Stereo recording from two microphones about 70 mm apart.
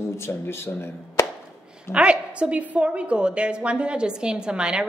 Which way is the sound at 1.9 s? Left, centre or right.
Centre.